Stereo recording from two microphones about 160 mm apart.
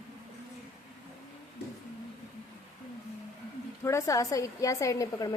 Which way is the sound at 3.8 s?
20° left (ahead or behind).